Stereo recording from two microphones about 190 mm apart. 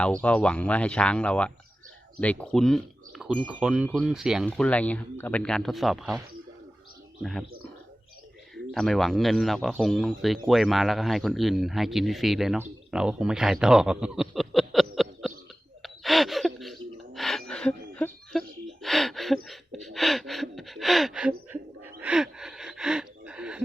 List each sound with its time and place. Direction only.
0.0 s speech: 5° left (ahead or behind)
3.6 s speech: 5° right (ahead or behind)
7.2 s speech: centre (ahead or behind)
8.7 s speech: centre (ahead or behind)
15.8 s gasp: centre (ahead or behind)
17.5 s a sound: 5° left (ahead or behind)
19.5 s gasp: centre (ahead or behind)